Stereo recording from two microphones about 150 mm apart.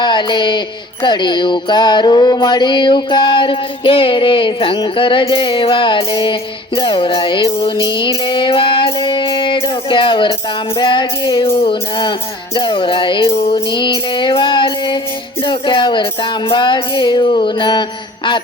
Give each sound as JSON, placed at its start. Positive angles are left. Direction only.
{"t": 0.0, "sound": "music", "side_deg": 30}